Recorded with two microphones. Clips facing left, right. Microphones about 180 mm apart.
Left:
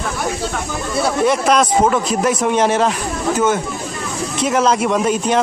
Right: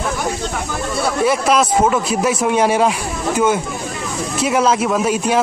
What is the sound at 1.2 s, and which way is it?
Speech, 5° right (ahead or behind).